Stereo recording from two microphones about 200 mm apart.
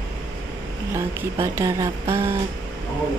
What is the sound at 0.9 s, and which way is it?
Speech, 15° right (ahead or behind).